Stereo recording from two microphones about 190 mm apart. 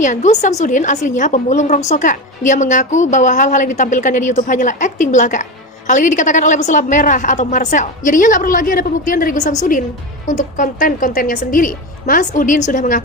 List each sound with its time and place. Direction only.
0.0 s a woman's voice: 40° left (ahead or behind)